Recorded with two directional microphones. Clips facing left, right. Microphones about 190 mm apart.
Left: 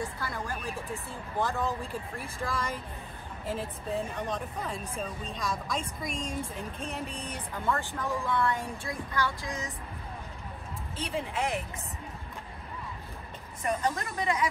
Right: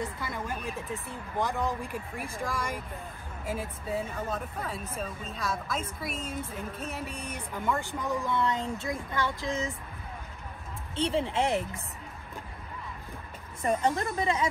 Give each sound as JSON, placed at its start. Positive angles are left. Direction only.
{"t": 0.0, "sound": "a woman's voice", "side_deg": -20}
{"t": 11.0, "sound": "speech", "side_deg": -30}
{"t": 13.6, "sound": "a woman's voice", "side_deg": -30}